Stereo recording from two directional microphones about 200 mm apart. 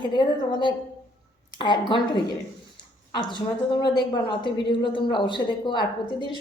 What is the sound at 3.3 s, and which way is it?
A woman's voice, 20° left (ahead or behind).